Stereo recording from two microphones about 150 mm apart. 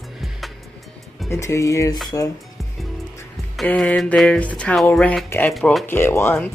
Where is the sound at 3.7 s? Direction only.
5° left (ahead or behind).